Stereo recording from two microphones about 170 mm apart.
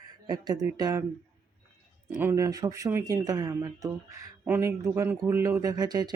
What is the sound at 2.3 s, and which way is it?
Speech, 20° right (ahead or behind).